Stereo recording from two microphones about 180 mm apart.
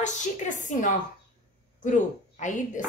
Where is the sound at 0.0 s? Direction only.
40° left (ahead or behind).